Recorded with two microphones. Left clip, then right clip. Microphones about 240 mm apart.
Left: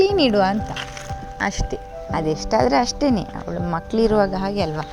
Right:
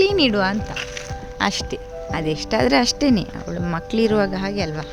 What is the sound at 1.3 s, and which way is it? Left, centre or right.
Speech, centre.